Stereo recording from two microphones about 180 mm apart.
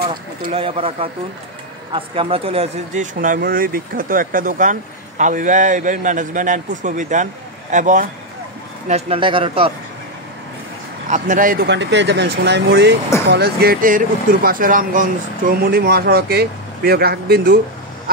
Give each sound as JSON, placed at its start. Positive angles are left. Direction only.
{"t": 0.5, "sound": "speech", "side_deg": -30}
{"t": 8.8, "sound": "speech", "side_deg": -35}
{"t": 11.1, "sound": "speech", "side_deg": -45}